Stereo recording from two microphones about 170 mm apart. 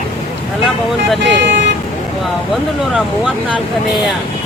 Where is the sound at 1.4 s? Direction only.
90° right.